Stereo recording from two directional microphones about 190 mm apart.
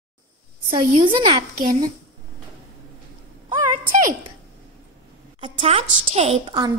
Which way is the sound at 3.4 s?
45° right (ahead or behind).